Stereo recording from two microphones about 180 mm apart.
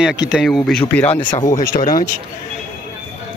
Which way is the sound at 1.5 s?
50° left (ahead or behind).